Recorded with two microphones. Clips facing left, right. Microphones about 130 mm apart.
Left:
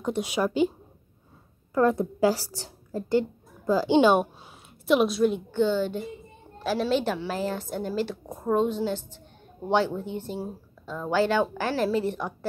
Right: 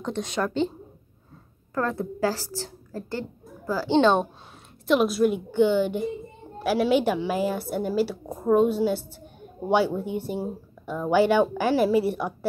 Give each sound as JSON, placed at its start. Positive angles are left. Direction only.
{"t": 0.0, "sound": "speech", "side_deg": 10}
{"t": 1.7, "sound": "a woman's voice", "side_deg": 15}
{"t": 4.8, "sound": "a woman's voice", "side_deg": 0}